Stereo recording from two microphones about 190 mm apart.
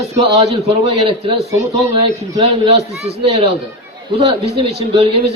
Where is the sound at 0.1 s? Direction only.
35° right (ahead or behind).